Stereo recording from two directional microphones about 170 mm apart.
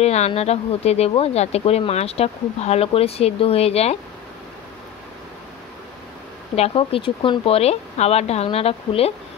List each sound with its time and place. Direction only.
0.0 s speech: 40° left (ahead or behind)
6.5 s speech: 35° left (ahead or behind)